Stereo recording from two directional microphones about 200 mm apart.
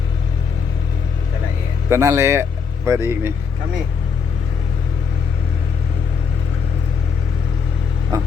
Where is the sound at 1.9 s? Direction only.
15° right (ahead or behind).